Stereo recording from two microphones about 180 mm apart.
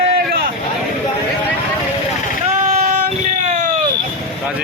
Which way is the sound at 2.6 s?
40° right (ahead or behind).